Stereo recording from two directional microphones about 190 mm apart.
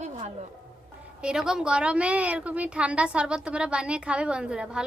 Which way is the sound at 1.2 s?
5° right (ahead or behind).